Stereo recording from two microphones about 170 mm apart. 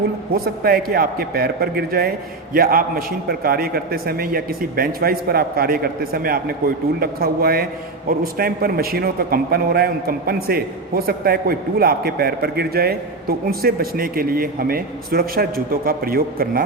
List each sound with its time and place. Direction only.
0.3 s a man's voice: 60° right (ahead or behind)